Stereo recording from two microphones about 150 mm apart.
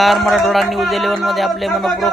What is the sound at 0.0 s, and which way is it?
A man's voice, centre (ahead or behind).